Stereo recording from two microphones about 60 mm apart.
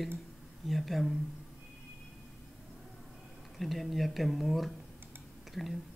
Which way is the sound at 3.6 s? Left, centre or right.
Centre.